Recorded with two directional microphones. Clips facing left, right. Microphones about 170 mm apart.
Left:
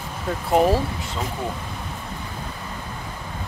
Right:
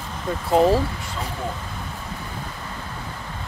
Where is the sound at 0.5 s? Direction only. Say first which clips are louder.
Right 1 dB; 5° left (ahead or behind).